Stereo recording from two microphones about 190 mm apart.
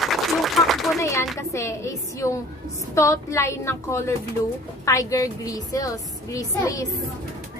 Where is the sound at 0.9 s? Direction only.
15° left (ahead or behind).